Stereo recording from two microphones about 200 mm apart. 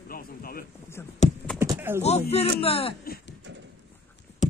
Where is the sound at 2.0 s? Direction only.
30° left (ahead or behind).